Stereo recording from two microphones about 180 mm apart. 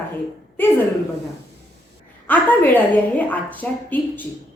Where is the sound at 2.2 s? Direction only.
10° left (ahead or behind).